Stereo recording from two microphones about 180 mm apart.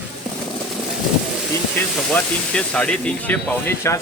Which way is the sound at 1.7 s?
5° left (ahead or behind).